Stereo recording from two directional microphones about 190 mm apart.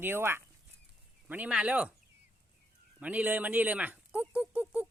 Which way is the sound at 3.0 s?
10° right (ahead or behind).